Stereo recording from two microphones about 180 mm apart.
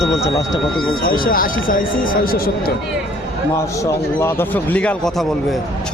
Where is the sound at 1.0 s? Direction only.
55° left (ahead or behind).